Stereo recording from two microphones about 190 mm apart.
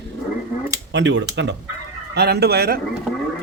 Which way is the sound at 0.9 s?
75° right (ahead or behind).